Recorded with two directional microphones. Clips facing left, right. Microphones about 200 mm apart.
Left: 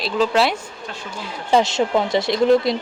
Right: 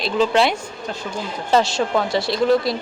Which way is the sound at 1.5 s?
20° left (ahead or behind).